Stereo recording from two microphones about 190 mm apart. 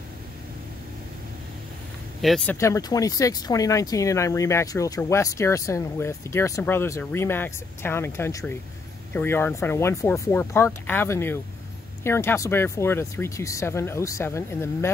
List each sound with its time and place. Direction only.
2.2 s speech: 5° left (ahead or behind)
2.5 s speech: 15° left (ahead or behind)